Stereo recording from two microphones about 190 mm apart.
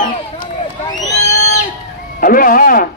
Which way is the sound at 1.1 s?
40° left (ahead or behind).